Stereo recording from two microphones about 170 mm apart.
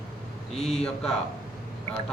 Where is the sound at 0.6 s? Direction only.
40° left (ahead or behind).